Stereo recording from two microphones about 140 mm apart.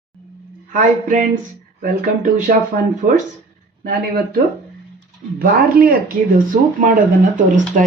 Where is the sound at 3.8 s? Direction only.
90° right.